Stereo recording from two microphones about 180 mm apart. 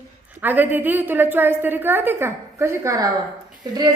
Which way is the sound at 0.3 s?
10° right (ahead or behind).